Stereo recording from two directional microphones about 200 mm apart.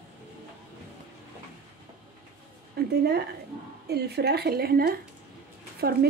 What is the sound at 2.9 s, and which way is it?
Speech, 55° right (ahead or behind).